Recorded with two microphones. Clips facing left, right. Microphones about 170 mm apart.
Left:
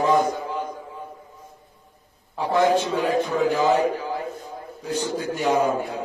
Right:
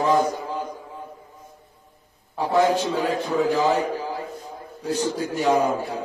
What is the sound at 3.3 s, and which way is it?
A man's voice, 35° right (ahead or behind).